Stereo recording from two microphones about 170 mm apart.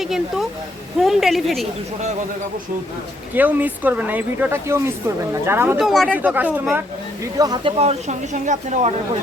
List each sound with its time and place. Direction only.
0.0 s a woman's voice: centre (ahead or behind)
3.3 s speech: 10° right (ahead or behind)
5.8 s a woman's voice: centre (ahead or behind)
6.1 s speech: 10° right (ahead or behind)
7.3 s speech: 25° right (ahead or behind)
7.8 s speech: 40° right (ahead or behind)